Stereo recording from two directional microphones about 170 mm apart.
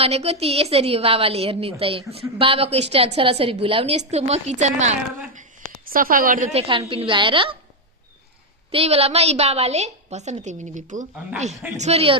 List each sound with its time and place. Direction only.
0.0 s a woman's voice: 35° right (ahead or behind); by 6.5 s 55° right (ahead or behind)
6.5 s a woman's voice: 35° right (ahead or behind)
8.7 s a woman's voice: 35° right (ahead or behind)